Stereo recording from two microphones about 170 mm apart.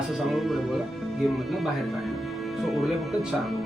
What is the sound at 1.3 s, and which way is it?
Speech, centre (ahead or behind).